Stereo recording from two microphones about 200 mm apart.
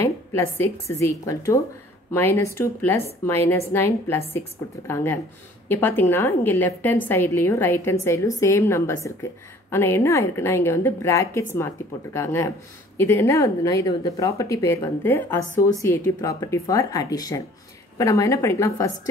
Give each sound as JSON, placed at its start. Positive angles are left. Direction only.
{"t": 0.0, "sound": "a woman's voice", "side_deg": 15}